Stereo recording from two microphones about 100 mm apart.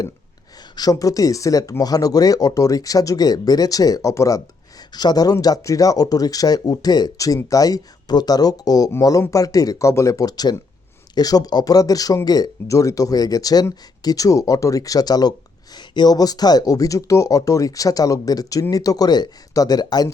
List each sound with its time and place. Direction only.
0.8 s speech: 35° left (ahead or behind)
4.9 s speech: 45° left (ahead or behind)